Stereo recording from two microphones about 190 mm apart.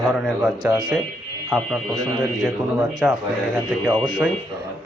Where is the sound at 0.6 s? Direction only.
25° right (ahead or behind).